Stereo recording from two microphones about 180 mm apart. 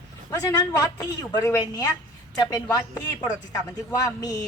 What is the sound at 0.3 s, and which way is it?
Speech, 20° left (ahead or behind).